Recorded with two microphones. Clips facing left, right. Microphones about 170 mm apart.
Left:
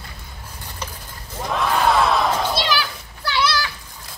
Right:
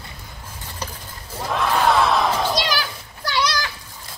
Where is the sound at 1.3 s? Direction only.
Centre (ahead or behind).